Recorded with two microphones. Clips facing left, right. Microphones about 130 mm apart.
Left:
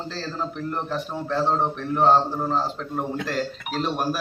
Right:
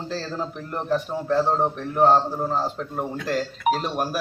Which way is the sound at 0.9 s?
10° right (ahead or behind).